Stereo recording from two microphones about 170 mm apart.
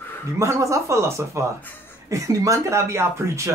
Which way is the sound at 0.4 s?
15° right (ahead or behind).